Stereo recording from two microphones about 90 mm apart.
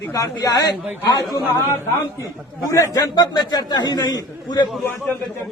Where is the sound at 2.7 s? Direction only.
40° left (ahead or behind).